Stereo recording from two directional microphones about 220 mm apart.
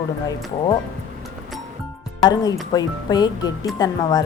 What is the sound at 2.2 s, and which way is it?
A woman's voice, 15° left (ahead or behind).